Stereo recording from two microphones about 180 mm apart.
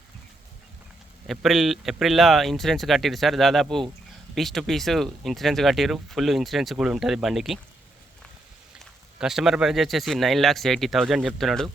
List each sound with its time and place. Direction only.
1.3 s speech: centre (ahead or behind)
8.8 s speech: 5° right (ahead or behind)